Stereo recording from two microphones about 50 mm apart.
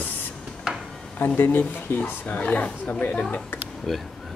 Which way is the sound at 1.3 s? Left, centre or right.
Left.